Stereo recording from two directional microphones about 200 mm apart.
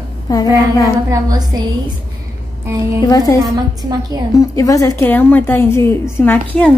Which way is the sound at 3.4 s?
20° right (ahead or behind).